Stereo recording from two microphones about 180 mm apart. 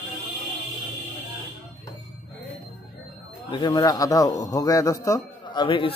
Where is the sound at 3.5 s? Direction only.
25° left (ahead or behind).